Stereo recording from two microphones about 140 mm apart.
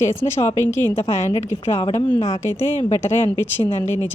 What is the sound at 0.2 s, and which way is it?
Speech, 20° left (ahead or behind).